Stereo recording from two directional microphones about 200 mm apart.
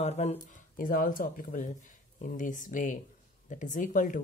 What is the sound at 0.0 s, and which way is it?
Speech, 30° left (ahead or behind).